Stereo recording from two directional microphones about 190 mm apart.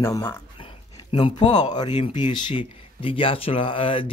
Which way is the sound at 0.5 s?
30° left (ahead or behind).